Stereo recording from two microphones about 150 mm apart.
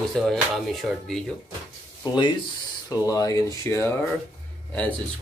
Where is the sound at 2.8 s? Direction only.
25° left (ahead or behind).